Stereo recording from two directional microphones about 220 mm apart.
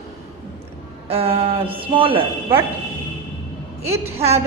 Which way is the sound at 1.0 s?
25° right (ahead or behind).